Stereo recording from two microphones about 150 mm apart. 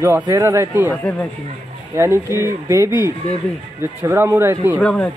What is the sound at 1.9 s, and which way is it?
Speech, 20° right (ahead or behind).